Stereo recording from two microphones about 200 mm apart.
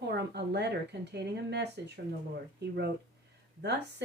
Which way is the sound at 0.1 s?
55° right (ahead or behind).